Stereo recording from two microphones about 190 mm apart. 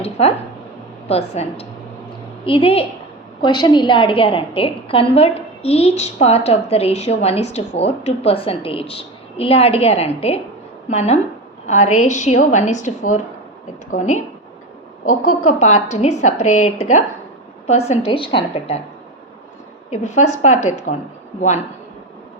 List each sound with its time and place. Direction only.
0.0 s a woman's voice: 35° left (ahead or behind)
15.2 s a woman's voice: 40° left (ahead or behind)
19.9 s a woman's voice: 35° left (ahead or behind)